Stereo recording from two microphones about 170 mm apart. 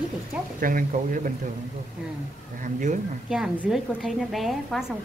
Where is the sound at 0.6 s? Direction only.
55° right (ahead or behind).